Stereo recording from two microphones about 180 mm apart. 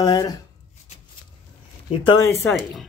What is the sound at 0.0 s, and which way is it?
Speech, 20° left (ahead or behind).